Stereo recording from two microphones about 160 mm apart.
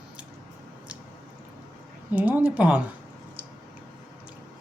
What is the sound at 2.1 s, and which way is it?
Speech, 10° right (ahead or behind).